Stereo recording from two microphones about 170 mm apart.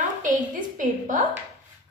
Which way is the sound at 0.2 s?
50° right (ahead or behind).